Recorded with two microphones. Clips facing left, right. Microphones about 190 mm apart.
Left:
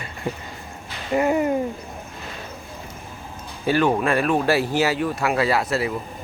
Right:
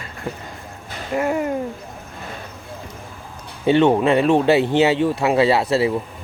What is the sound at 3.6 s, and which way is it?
Speech, 25° right (ahead or behind).